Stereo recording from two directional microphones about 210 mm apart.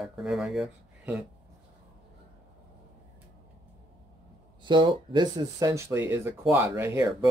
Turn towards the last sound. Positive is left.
turn(degrees=-10)  # may be behind; listen again after turning